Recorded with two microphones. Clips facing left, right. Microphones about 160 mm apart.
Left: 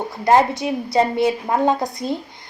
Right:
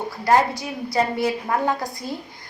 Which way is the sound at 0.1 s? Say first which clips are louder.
Left 3 dB; 20° left (ahead or behind).